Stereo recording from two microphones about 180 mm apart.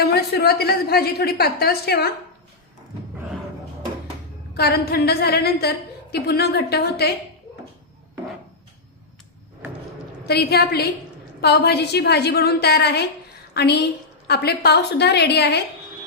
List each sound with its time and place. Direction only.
0.0 s a woman's voice: 60° left (ahead or behind)
4.5 s a woman's voice: 60° left (ahead or behind)
10.2 s a woman's voice: 65° left (ahead or behind)